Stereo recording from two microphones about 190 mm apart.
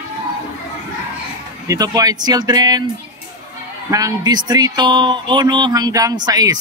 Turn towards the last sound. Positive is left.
turn(degrees=-20)  # may be behind; listen again after turning